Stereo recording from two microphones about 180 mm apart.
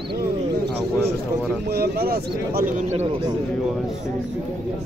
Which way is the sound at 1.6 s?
60° right (ahead or behind).